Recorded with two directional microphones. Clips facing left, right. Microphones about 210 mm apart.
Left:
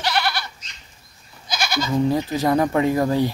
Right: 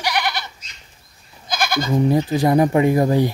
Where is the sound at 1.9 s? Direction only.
15° right (ahead or behind).